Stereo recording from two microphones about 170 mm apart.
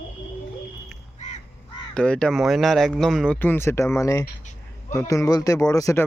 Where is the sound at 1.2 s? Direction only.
45° left (ahead or behind).